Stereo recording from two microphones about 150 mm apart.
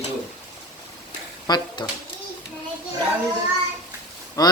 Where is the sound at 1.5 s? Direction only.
30° left (ahead or behind).